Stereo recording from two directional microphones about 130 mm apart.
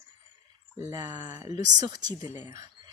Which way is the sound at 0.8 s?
25° right (ahead or behind).